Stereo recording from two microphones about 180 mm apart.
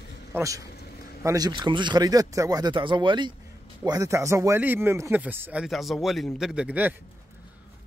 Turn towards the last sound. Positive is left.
turn(degrees=-10)  # may be behind; listen again after turning